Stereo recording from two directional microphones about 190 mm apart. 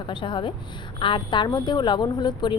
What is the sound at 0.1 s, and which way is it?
A woman's voice, 25° left (ahead or behind).